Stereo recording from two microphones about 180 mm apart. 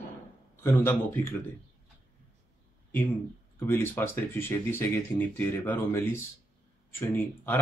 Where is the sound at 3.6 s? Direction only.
15° left (ahead or behind).